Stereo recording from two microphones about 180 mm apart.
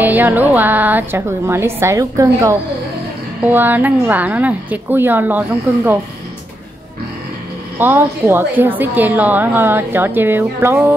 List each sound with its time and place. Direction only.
0.0 s a woman's voice: 10° right (ahead or behind)
7.8 s a woman's voice: 10° right (ahead or behind)